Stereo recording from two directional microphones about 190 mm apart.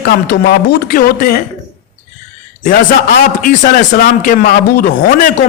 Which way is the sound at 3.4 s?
45° left (ahead or behind).